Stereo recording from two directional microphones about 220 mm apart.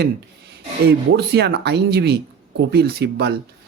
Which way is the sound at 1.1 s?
50° right (ahead or behind).